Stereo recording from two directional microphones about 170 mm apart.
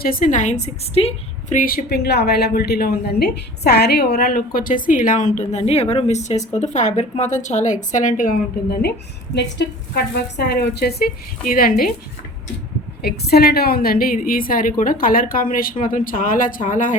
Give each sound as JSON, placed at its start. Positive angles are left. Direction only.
{"t": 0.0, "sound": "a woman's voice", "side_deg": 55}
{"t": 9.3, "sound": "a woman's voice", "side_deg": 90}
{"t": 13.0, "sound": "a woman's voice", "side_deg": 70}